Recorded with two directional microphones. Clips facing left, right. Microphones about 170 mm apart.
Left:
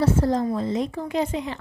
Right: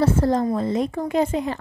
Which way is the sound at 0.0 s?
60° right (ahead or behind).